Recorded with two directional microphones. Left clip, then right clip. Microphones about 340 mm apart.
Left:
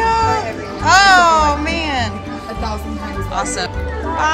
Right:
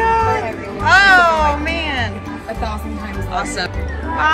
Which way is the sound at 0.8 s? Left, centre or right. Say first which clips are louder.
Left 1 dB; centre.